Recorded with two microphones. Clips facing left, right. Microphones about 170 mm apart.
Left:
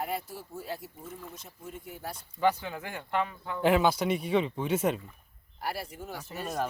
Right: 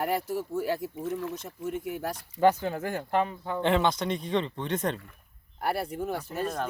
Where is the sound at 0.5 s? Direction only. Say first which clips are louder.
Right 7 dB; 80° right.